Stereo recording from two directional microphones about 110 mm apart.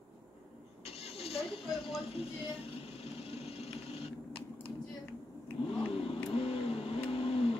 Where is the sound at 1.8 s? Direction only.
60° left (ahead or behind).